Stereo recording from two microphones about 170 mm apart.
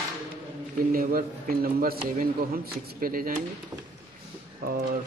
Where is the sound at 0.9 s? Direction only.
60° right (ahead or behind).